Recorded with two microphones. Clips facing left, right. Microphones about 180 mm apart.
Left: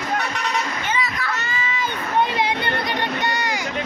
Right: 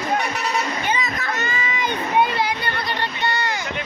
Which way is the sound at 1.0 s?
45° right (ahead or behind).